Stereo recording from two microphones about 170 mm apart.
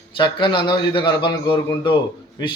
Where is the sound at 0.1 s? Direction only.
30° left (ahead or behind).